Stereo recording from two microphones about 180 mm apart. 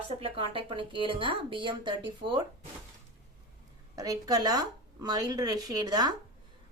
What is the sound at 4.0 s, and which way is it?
A woman's voice, 20° right (ahead or behind).